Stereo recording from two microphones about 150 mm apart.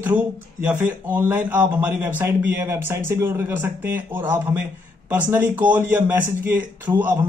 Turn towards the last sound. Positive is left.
turn(degrees=-15)  # may be behind; listen again after turning